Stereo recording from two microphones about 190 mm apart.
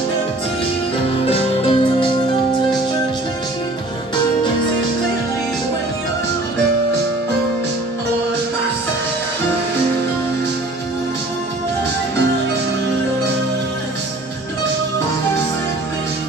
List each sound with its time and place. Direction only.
1.3 s music: 25° left (ahead or behind)